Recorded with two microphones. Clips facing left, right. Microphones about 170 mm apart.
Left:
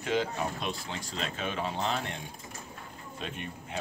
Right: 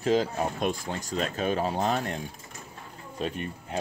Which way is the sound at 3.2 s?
40° right (ahead or behind).